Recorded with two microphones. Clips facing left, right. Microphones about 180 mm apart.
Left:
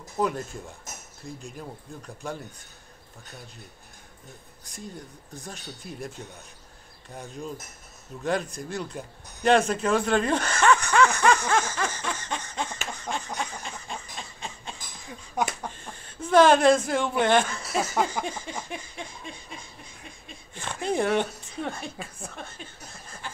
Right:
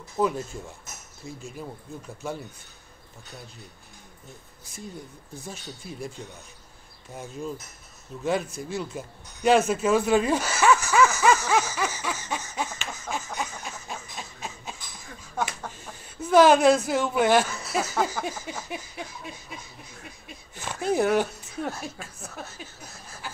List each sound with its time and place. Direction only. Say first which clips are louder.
0.2 s speech: right 2 dB; centre (ahead or behind)
5.4 s speech: right 1 dB; centre (ahead or behind)
12.9 s a sound: even; 5° right (ahead or behind)
15.4 s speech: left 2 dB; 15° left (ahead or behind)
15.7 s a sound: even; 5° right (ahead or behind)
16.3 s speech: right 1 dB; 5° right (ahead or behind)